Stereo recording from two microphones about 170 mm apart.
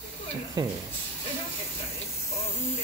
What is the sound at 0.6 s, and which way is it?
Speech, 25° right (ahead or behind).